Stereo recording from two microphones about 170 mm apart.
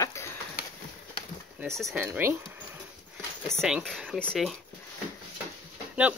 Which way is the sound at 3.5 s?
Centre (ahead or behind).